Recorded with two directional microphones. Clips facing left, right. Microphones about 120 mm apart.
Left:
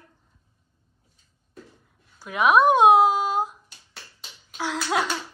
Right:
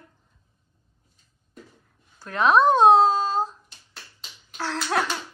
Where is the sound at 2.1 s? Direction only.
10° left (ahead or behind).